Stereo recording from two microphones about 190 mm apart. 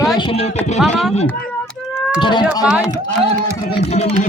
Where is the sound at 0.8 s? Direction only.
Centre (ahead or behind).